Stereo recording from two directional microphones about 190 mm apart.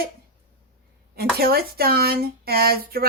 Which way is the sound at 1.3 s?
55° right (ahead or behind).